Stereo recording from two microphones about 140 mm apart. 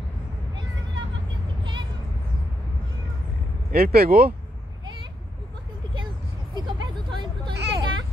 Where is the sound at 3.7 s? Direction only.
90° right.